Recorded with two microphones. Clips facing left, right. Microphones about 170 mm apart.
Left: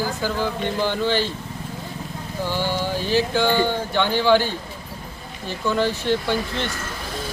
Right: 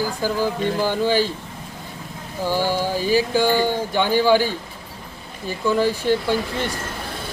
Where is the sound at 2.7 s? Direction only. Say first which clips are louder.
Right 2 dB; 10° right (ahead or behind).